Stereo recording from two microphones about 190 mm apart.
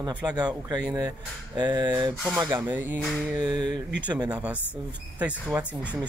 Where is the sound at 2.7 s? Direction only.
10° right (ahead or behind).